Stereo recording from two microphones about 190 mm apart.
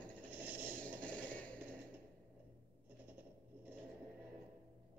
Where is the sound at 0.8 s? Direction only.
5° left (ahead or behind).